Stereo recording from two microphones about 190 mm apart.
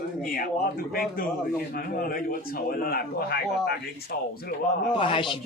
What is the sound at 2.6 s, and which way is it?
A man's voice, 50° left (ahead or behind).